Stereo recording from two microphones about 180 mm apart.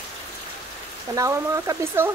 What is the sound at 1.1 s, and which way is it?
Speech, 20° right (ahead or behind).